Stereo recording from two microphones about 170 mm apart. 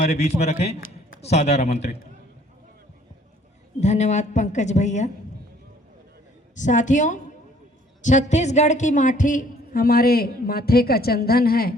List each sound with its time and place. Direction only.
0.3 s a man's voice: 40° left (ahead or behind)
3.8 s a woman's voice: 40° left (ahead or behind)
6.6 s a woman's voice: 45° left (ahead or behind); by 11.7 s 65° left (ahead or behind)